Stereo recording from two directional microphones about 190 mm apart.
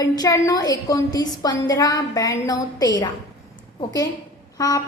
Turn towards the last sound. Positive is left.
turn(degrees=20)  # may be behind; listen again after turning